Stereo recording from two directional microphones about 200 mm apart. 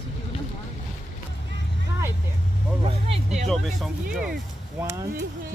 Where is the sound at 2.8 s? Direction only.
30° right (ahead or behind).